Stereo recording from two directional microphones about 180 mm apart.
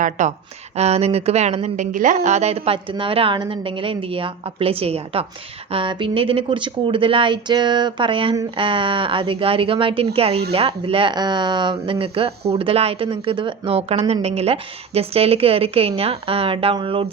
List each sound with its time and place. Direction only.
0.0 s a woman's voice: 40° right (ahead or behind)